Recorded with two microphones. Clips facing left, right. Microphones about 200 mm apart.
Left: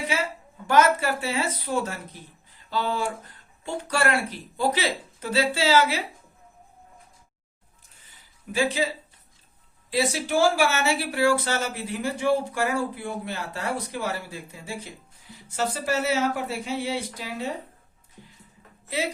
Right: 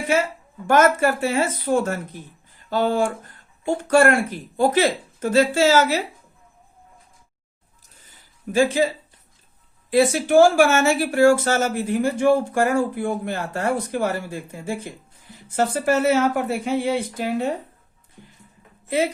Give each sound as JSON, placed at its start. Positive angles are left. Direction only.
{"t": 0.1, "sound": "speech", "side_deg": -50}
{"t": 8.5, "sound": "speech", "side_deg": -45}
{"t": 9.9, "sound": "speech", "side_deg": -50}